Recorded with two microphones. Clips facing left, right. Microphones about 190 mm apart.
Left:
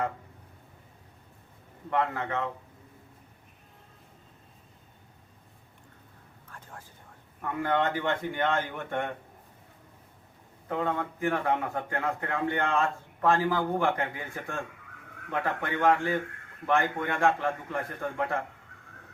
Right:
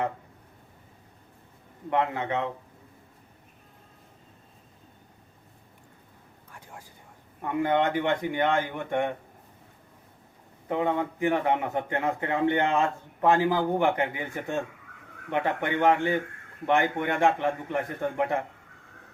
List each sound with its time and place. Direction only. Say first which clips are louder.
1.9 s a man's voice: right 2 dB; 20° right (ahead or behind)
6.5 s whispering: right 1 dB; 10° right (ahead or behind)
7.4 s speech: right 3 dB; 20° right (ahead or behind)
10.7 s a man's voice: right 4 dB; 15° right (ahead or behind)